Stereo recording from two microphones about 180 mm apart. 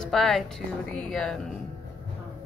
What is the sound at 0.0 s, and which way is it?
Speech, 5° left (ahead or behind).